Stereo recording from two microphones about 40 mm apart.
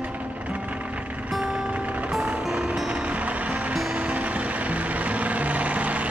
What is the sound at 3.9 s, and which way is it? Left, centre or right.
Vehicle, right.